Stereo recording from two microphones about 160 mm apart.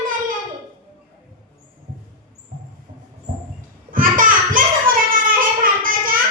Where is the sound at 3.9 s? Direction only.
60° right (ahead or behind).